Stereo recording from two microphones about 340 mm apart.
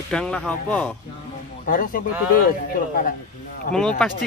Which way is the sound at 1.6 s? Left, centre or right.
Left.